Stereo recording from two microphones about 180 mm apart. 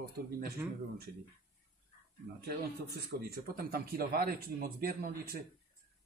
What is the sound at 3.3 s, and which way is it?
Speech, 55° right (ahead or behind).